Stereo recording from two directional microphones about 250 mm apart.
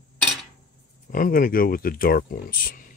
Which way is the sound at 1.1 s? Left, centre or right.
Left.